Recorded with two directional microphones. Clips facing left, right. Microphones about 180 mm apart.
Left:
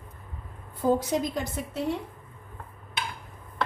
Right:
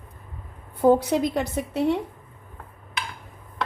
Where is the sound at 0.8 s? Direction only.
65° right (ahead or behind).